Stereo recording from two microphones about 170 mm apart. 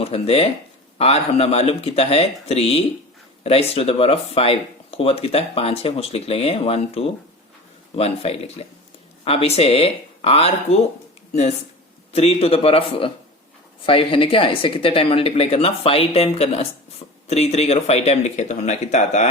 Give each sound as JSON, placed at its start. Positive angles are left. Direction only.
{"t": 0.0, "sound": "speech", "side_deg": 35}
{"t": 12.1, "sound": "speech", "side_deg": 35}